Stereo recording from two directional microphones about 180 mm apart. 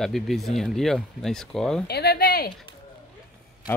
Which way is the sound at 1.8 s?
65° left (ahead or behind).